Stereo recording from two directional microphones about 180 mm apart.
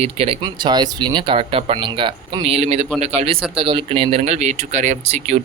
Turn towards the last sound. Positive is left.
turn(degrees=-40)  # may be behind; listen again after turning